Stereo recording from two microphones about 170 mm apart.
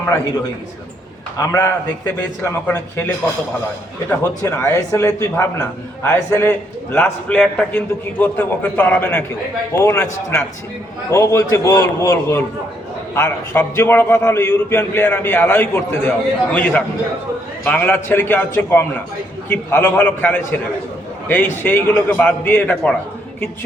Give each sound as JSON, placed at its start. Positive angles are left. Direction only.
{"t": 1.4, "sound": "a man's voice", "side_deg": 15}
{"t": 4.1, "sound": "a man's voice", "side_deg": 15}